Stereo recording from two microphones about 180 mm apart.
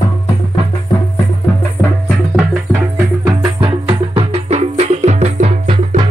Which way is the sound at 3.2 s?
25° right (ahead or behind).